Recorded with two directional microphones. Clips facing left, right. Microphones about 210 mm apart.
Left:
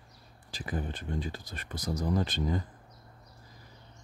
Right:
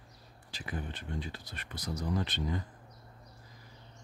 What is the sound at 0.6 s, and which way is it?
Speech, 40° left (ahead or behind).